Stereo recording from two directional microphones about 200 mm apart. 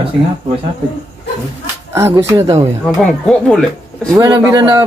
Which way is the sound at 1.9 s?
15° right (ahead or behind).